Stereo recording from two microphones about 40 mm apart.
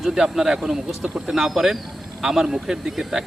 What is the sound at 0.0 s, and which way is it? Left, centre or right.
Speech, centre.